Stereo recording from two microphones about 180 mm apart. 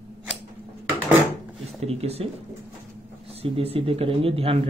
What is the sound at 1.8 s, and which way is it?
Speech, 35° right (ahead or behind).